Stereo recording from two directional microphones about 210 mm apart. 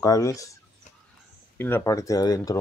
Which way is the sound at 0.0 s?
15° left (ahead or behind).